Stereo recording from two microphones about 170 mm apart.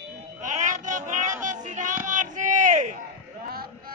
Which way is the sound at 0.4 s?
45° right (ahead or behind).